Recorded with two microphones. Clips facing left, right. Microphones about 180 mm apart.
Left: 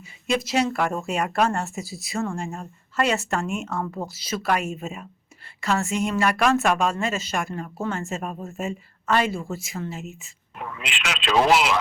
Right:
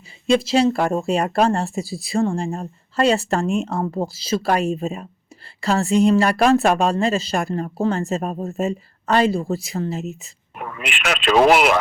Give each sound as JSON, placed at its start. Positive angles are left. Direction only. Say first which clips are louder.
{"t": 0.3, "sound": "speech", "louder": "right 7 dB", "side_deg": -30}
{"t": 10.6, "sound": "speech", "louder": "right 5 dB", "side_deg": -60}